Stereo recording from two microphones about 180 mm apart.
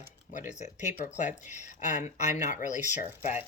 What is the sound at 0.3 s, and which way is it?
Speech, 45° left (ahead or behind).